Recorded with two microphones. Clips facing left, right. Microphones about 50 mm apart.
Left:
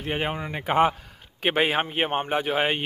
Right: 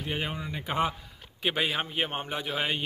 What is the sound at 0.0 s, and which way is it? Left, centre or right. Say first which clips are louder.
Speech: left 5 dB; left.